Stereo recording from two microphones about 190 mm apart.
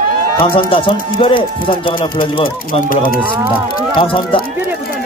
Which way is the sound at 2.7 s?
45° left (ahead or behind).